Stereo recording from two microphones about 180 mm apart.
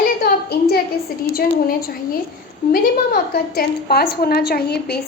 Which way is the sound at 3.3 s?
60° left (ahead or behind).